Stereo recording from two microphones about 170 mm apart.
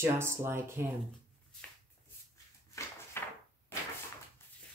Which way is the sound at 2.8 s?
20° left (ahead or behind).